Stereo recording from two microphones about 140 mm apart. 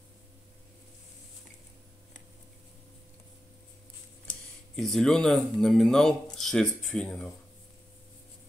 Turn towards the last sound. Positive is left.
turn(degrees=5)  # may be behind; listen again after turning